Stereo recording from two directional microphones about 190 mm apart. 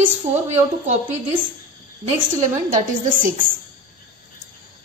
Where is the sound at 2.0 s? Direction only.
40° right (ahead or behind).